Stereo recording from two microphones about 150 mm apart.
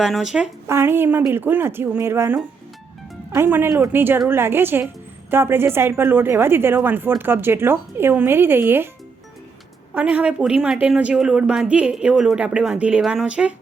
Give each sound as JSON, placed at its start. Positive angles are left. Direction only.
{"t": 0.0, "sound": "speech", "side_deg": -5}
{"t": 0.7, "sound": "speech", "side_deg": -15}
{"t": 9.9, "sound": "speech", "side_deg": -10}